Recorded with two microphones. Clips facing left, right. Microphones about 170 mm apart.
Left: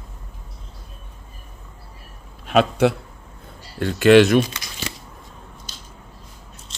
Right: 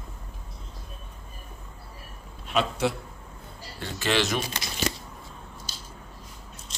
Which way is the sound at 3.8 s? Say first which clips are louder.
Left 14 dB; 60° left (ahead or behind).